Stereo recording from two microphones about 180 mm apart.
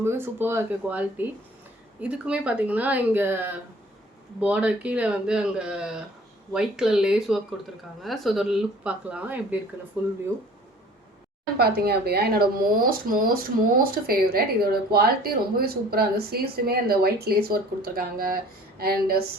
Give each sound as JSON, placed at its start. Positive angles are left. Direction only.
{"t": 0.0, "sound": "speech", "side_deg": -15}
{"t": 11.5, "sound": "a woman's voice", "side_deg": -60}